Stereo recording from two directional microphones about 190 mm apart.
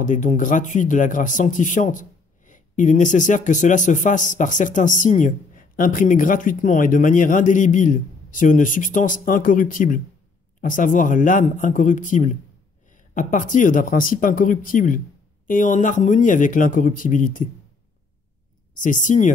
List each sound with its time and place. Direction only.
0.0 s speech: 40° left (ahead or behind)
18.8 s speech: 40° left (ahead or behind)